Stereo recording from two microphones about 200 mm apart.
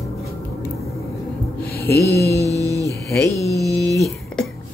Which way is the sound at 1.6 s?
50° left (ahead or behind).